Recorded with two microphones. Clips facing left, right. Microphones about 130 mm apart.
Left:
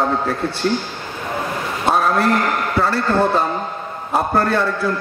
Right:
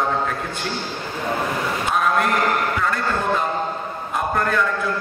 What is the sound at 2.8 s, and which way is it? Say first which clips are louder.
A man's voice: left 6 dB; 35° left (ahead or behind).